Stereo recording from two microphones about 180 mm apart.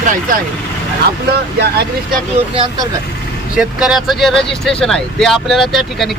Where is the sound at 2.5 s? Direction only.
30° right (ahead or behind).